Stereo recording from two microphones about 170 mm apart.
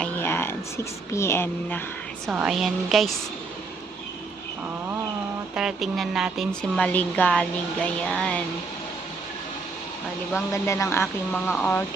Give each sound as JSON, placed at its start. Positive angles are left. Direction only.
{"t": 0.0, "sound": "a sound", "side_deg": 15}
{"t": 1.1, "sound": "speech", "side_deg": 15}
{"t": 2.2, "sound": "music", "side_deg": -5}
{"t": 5.5, "sound": "music", "side_deg": 0}
{"t": 10.5, "sound": "speech", "side_deg": 15}